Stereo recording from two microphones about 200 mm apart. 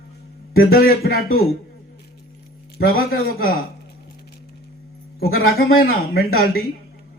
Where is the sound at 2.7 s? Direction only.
50° left (ahead or behind).